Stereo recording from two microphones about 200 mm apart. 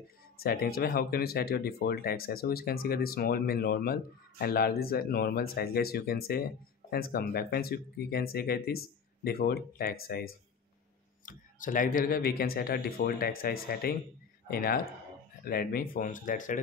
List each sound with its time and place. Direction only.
0.4 s speech: 50° left (ahead or behind)